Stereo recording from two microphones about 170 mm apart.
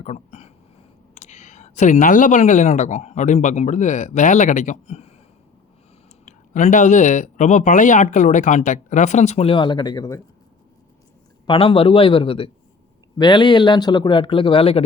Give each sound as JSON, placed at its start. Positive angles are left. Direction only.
{"t": 0.0, "sound": "speech", "side_deg": 40}
{"t": 6.2, "sound": "speech", "side_deg": 45}
{"t": 11.4, "sound": "a man's voice", "side_deg": 30}